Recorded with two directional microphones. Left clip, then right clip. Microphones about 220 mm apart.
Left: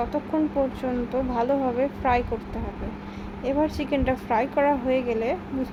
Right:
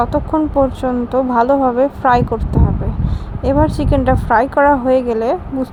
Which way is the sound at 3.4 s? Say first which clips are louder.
Right 10 dB; 25° right (ahead or behind).